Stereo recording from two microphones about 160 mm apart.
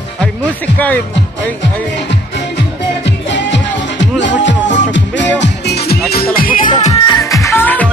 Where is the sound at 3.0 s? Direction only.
90° left.